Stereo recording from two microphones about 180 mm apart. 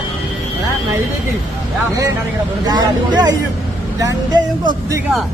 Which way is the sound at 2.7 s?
20° right (ahead or behind).